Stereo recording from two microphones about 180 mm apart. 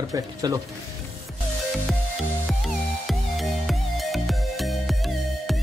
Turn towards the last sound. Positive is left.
turn(degrees=0)  # may be behind; listen again after turning